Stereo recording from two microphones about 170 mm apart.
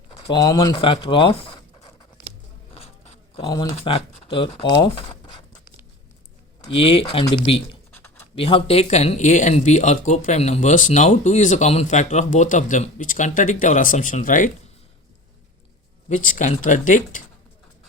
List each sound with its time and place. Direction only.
0.3 s speech: 20° left (ahead or behind)
2.7 s a sound: 40° left (ahead or behind)
3.4 s speech: 25° left (ahead or behind)
3.7 s speech: 35° left (ahead or behind)
6.6 s speech: 30° left (ahead or behind)
7.9 s a sound: 10° left (ahead or behind)
8.4 s speech: 35° left (ahead or behind); by 14.5 s 50° left (ahead or behind)
16.0 s speech: 50° left (ahead or behind)